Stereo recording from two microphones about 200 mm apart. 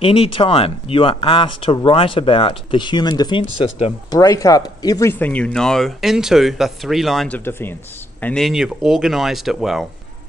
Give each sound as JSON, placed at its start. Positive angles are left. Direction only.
{"t": 0.0, "sound": "speech", "side_deg": 25}